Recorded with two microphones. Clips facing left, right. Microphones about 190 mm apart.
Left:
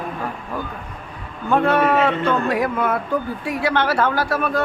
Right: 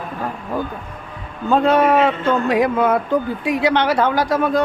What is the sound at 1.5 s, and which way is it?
A man's voice, 20° right (ahead or behind).